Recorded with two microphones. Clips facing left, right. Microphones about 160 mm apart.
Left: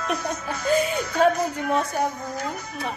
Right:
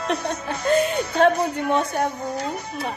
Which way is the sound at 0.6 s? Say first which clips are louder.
Right 2 dB; 60° right (ahead or behind).